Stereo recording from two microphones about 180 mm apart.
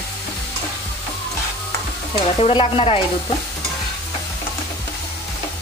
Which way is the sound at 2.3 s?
30° left (ahead or behind).